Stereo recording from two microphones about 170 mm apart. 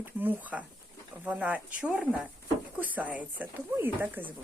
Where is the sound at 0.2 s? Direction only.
10° right (ahead or behind).